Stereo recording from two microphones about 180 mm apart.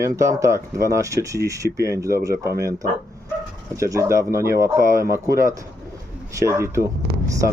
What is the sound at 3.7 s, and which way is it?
Speech, 15° right (ahead or behind).